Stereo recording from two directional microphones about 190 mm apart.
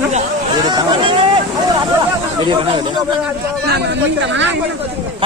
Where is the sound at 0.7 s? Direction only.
25° right (ahead or behind).